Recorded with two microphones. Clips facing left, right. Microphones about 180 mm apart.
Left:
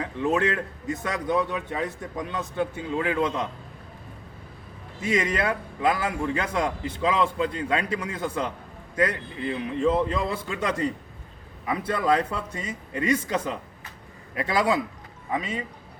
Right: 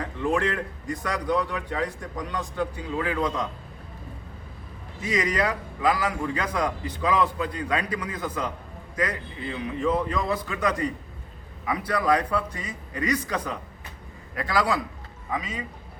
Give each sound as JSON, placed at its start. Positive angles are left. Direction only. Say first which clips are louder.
{"t": 0.2, "sound": "a man's voice", "louder": "left 1 dB", "side_deg": 20}
{"t": 5.0, "sound": "a man's voice", "louder": "left 1 dB", "side_deg": 25}
{"t": 9.8, "sound": "a man's voice", "louder": "left 2 dB", "side_deg": 30}